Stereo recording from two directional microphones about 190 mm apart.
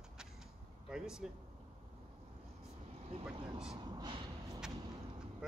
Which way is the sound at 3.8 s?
25° right (ahead or behind).